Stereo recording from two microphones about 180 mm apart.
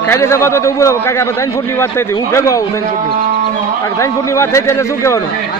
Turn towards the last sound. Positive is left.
turn(degrees=15)  # may be behind; listen again after turning